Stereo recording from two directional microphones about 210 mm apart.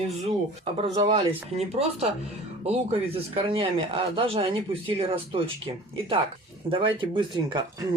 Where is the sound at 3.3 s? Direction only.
25° right (ahead or behind).